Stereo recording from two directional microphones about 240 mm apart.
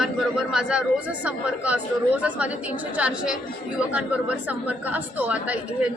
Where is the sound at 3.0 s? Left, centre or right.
Centre.